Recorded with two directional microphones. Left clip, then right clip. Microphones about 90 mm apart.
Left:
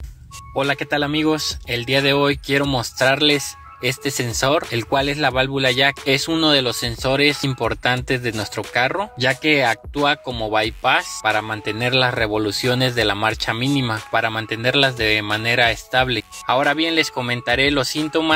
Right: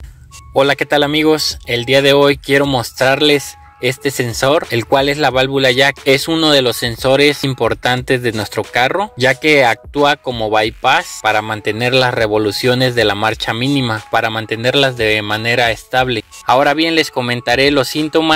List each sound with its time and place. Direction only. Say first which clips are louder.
0.6 s speech: right 8 dB; 60° right (ahead or behind); by 4.7 s 35° right (ahead or behind)
4.7 s speech: right 7 dB; 45° right (ahead or behind)
9.2 s speech: right 6 dB; 60° right (ahead or behind)
10.0 s speech: right 5 dB; 40° right (ahead or behind)
16.4 s speech: right 6 dB; 55° right (ahead or behind)